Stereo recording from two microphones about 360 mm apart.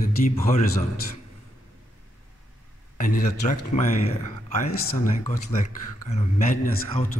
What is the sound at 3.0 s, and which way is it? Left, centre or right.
Speech, left.